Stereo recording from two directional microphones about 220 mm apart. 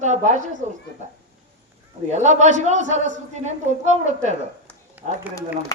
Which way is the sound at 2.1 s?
30° right (ahead or behind).